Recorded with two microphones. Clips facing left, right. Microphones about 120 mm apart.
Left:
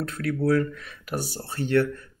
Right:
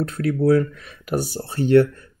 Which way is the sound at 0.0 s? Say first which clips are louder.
Right 6 dB; 15° right (ahead or behind).